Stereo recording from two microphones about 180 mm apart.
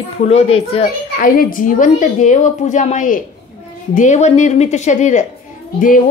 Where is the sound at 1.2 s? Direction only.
50° left (ahead or behind).